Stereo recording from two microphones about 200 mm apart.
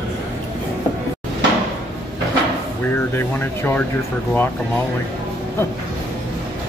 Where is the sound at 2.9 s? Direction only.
10° left (ahead or behind).